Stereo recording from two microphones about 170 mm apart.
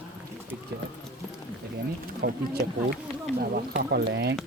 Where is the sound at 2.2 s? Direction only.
60° right (ahead or behind).